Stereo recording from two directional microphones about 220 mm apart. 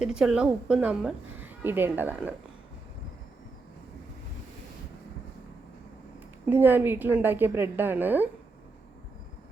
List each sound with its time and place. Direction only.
0.0 s a woman's voice: 5° right (ahead or behind)
6.4 s a woman's voice: 10° right (ahead or behind)